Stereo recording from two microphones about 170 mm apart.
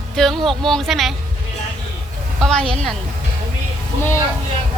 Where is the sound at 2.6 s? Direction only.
35° right (ahead or behind).